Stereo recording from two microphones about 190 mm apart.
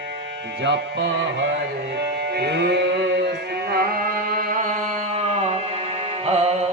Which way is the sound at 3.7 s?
50° right (ahead or behind).